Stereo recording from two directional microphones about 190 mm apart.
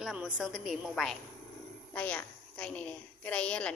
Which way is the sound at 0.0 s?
5° right (ahead or behind).